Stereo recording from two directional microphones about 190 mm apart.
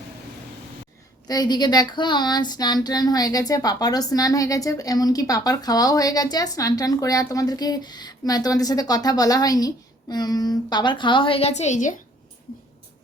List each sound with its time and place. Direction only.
1.3 s speech: 20° left (ahead or behind); by 11.9 s 40° left (ahead or behind)